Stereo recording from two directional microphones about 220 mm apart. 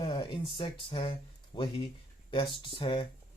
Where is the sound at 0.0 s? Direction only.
20° left (ahead or behind).